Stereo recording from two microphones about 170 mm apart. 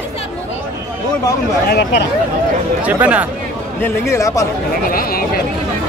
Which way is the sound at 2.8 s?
10° right (ahead or behind).